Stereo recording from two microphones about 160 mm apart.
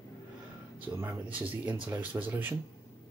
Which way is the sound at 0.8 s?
10° right (ahead or behind).